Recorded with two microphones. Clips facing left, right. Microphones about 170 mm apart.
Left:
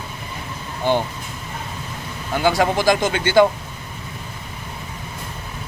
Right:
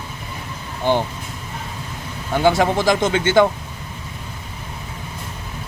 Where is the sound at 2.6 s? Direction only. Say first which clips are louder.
Even; 20° right (ahead or behind).